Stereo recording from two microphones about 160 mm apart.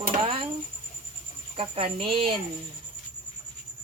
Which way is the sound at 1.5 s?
35° right (ahead or behind).